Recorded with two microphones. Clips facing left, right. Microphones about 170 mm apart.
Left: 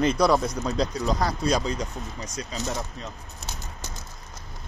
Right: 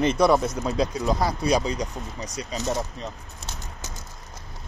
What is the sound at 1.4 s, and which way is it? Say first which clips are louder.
Speech: right 3 dB; 15° right (ahead or behind).